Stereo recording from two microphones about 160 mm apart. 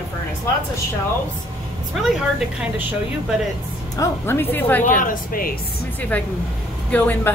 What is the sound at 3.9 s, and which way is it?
A woman's voice, 15° left (ahead or behind).